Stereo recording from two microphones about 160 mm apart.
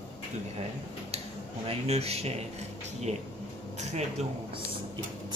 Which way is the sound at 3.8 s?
45° right (ahead or behind).